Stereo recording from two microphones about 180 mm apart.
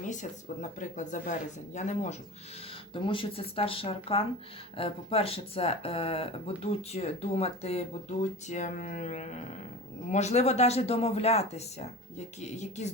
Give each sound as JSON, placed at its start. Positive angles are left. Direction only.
{"t": 0.0, "sound": "speech", "side_deg": 45}
{"t": 2.9, "sound": "speech", "side_deg": 30}